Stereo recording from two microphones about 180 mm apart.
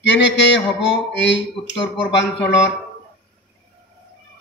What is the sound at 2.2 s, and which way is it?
Speech, 80° left.